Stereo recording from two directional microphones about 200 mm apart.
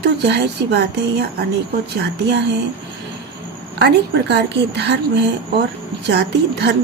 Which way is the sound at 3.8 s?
60° right (ahead or behind).